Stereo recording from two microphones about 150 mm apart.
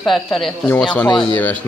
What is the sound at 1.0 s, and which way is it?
Speech, 30° left (ahead or behind).